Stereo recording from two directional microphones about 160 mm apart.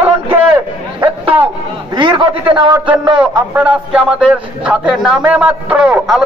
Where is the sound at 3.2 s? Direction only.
10° right (ahead or behind).